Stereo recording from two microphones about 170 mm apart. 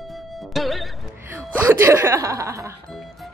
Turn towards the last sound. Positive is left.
turn(degrees=0)  # may be behind; listen again after turning